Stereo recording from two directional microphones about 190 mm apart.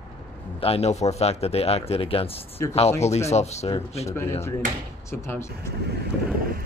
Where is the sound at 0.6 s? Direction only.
30° left (ahead or behind).